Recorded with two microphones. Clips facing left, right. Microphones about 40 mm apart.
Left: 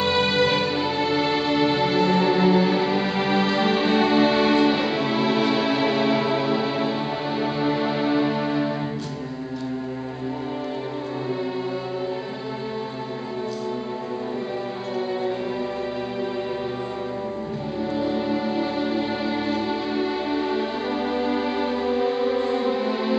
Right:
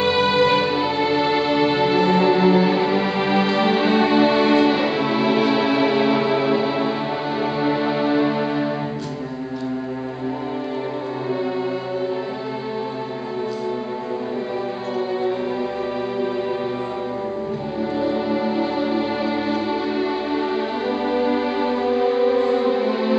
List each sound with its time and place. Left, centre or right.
0.0 s music: centre
17.9 s music: centre